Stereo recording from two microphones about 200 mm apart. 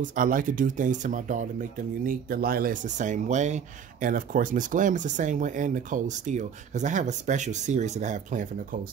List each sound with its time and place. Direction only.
0.0 s speech: 40° right (ahead or behind)